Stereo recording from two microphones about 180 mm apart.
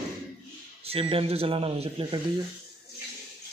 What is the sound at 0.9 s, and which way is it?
Speech, 30° right (ahead or behind).